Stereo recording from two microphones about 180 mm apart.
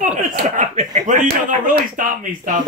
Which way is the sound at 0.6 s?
40° right (ahead or behind).